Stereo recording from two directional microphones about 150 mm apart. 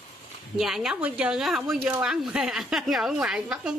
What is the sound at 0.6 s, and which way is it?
Speech, centre (ahead or behind).